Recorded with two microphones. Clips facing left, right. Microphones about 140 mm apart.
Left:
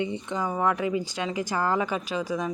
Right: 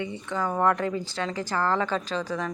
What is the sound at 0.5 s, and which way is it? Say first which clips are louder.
Speech: right 1 dB; 5° left (ahead or behind).